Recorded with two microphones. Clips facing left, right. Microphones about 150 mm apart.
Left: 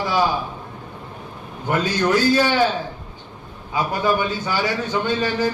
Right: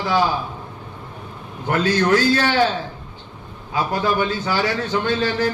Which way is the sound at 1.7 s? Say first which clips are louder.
Right 2 dB; 15° left (ahead or behind).